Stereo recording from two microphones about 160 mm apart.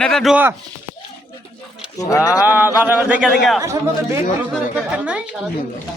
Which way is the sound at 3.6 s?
20° right (ahead or behind).